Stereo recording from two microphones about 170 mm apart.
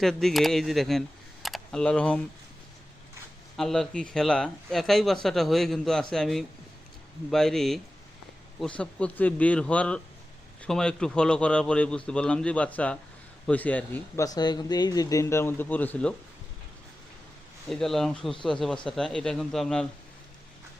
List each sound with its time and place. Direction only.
0.0 s speech: centre (ahead or behind)
3.6 s speech: centre (ahead or behind)
14.3 s speech: 25° left (ahead or behind); by 16.1 s 10° left (ahead or behind)
17.7 s speech: centre (ahead or behind)